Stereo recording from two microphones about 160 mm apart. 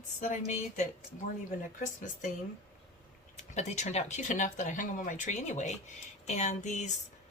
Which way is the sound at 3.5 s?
45° left (ahead or behind).